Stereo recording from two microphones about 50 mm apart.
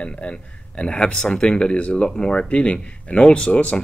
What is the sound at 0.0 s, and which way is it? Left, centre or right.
Speech, left.